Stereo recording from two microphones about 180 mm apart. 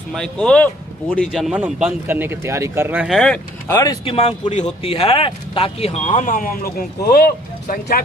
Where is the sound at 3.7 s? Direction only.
20° left (ahead or behind).